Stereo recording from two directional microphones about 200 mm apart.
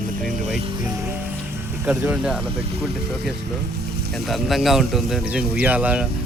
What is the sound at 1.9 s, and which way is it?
Speech, 5° right (ahead or behind).